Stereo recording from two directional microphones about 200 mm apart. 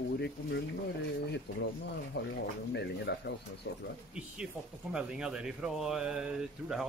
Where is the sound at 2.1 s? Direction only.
55° left (ahead or behind).